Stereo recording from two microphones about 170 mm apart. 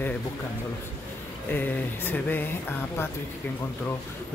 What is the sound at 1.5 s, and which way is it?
Speech, 10° left (ahead or behind).